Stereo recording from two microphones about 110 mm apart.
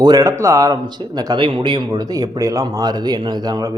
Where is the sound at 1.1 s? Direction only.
40° right (ahead or behind).